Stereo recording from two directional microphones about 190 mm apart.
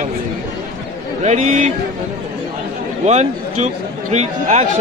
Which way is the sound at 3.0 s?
35° right (ahead or behind).